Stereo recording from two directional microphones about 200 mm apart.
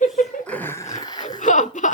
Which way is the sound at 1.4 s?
40° left (ahead or behind).